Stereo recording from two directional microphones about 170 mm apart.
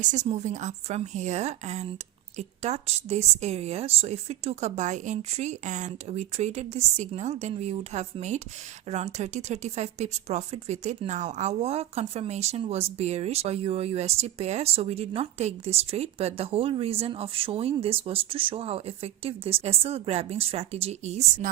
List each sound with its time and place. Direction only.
0.0 s a woman's voice: 45° right (ahead or behind)